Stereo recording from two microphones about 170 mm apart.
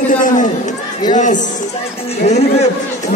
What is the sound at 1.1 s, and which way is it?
A man's voice, 45° left (ahead or behind).